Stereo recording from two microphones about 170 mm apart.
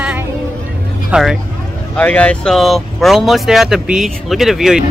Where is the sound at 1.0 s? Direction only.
5° right (ahead or behind).